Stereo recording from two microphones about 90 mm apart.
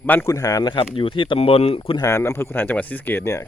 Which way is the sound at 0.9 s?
75° left (ahead or behind).